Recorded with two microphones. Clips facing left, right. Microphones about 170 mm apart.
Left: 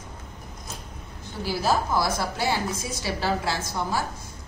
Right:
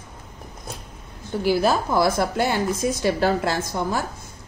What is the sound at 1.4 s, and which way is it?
A woman's voice, 60° right (ahead or behind).